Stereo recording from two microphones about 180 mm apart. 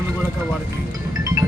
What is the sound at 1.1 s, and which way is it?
Music, 20° right (ahead or behind).